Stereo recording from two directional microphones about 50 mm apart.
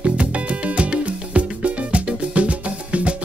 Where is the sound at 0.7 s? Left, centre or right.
Right.